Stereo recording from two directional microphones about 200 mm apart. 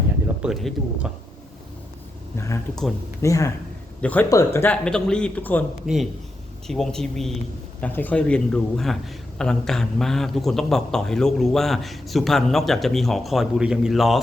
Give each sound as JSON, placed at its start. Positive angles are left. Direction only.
{"t": 0.4, "sound": "a man's voice", "side_deg": 0}
{"t": 2.3, "sound": "a man's voice", "side_deg": 15}